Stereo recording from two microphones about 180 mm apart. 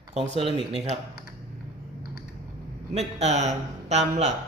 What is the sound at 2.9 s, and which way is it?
A woman's voice, 40° right (ahead or behind).